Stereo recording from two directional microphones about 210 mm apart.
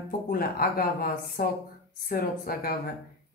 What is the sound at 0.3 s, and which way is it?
Speech, 45° left (ahead or behind).